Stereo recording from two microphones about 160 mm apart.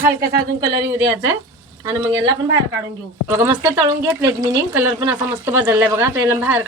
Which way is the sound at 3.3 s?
20° right (ahead or behind).